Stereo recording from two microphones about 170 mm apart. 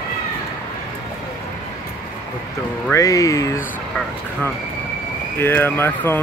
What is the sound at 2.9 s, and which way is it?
Speech, 20° left (ahead or behind).